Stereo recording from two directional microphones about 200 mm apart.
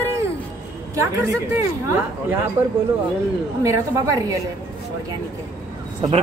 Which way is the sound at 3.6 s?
15° right (ahead or behind).